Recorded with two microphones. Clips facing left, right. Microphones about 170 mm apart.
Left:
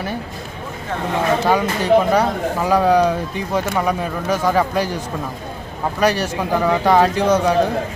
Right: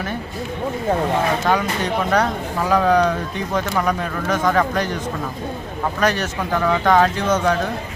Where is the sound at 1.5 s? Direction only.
10° left (ahead or behind).